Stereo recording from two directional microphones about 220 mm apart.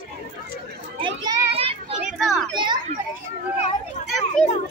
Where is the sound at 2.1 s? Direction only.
Centre (ahead or behind).